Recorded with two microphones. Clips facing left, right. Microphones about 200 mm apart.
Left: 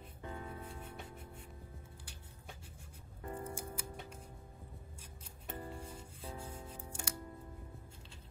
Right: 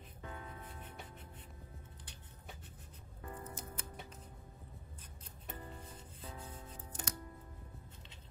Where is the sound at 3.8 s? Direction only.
10° left (ahead or behind).